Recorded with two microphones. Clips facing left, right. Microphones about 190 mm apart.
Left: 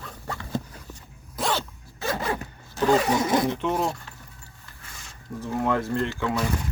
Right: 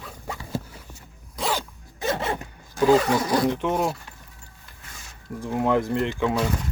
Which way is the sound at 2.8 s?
5° right (ahead or behind).